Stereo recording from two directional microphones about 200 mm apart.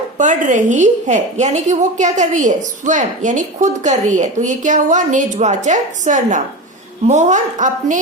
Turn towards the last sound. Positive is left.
turn(degrees=-35)  # may be behind; listen again after turning